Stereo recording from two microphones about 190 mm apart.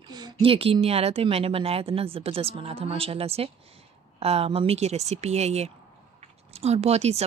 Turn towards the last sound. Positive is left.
turn(degrees=-35)  # may be behind; listen again after turning